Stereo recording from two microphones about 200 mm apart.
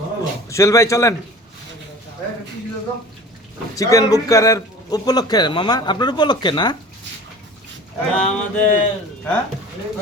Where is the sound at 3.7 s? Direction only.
15° left (ahead or behind).